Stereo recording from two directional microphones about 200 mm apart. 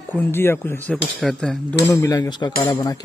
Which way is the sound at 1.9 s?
15° left (ahead or behind).